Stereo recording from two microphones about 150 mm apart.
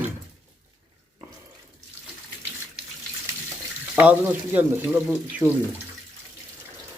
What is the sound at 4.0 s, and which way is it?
Speech, 10° right (ahead or behind).